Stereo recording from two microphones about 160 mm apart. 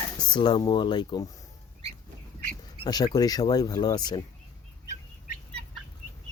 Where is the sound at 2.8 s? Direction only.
25° left (ahead or behind).